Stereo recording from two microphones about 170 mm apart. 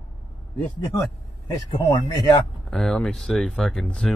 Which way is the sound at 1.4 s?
15° left (ahead or behind).